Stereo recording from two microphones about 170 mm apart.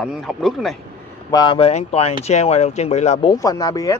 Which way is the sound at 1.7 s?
40° left (ahead or behind).